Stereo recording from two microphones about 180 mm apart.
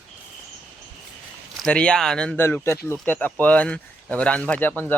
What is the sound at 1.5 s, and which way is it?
Speech, 5° left (ahead or behind).